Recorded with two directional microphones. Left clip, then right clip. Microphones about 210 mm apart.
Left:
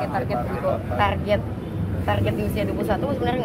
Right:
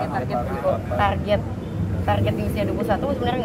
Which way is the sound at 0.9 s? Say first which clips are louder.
Left 1 dB; 5° right (ahead or behind).